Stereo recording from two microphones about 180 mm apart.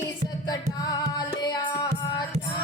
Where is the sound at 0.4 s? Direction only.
20° left (ahead or behind).